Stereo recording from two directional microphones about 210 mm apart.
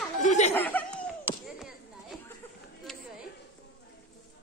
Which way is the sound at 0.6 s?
10° left (ahead or behind).